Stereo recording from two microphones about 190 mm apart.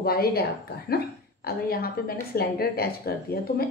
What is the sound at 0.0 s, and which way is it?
A woman's voice, 55° left (ahead or behind).